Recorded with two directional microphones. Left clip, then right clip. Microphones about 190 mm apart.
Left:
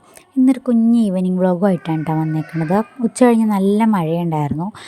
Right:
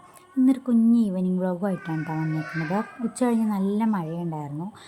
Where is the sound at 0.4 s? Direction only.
35° left (ahead or behind).